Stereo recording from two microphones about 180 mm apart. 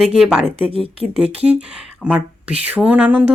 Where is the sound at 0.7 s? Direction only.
30° right (ahead or behind).